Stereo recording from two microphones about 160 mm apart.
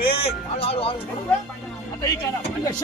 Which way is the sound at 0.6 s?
35° left (ahead or behind).